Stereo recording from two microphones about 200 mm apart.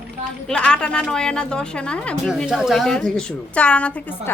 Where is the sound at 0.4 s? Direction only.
5° left (ahead or behind).